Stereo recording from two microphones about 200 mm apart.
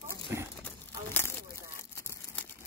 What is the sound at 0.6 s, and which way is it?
Crumpling, 10° left (ahead or behind).